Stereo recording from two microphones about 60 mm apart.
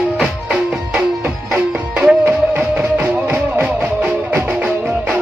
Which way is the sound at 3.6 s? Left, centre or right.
Right.